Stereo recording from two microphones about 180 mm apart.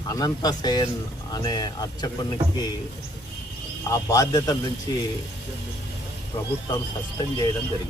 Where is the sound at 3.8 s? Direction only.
20° left (ahead or behind).